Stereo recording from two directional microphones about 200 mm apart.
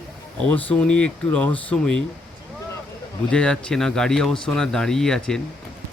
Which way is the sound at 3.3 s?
5° left (ahead or behind).